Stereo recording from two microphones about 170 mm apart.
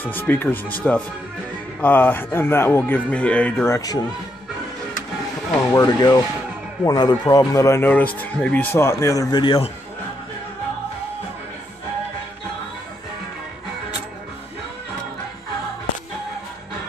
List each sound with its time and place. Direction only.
0.0 s a man's voice: 10° left (ahead or behind)
5.8 s a man's voice: 25° left (ahead or behind)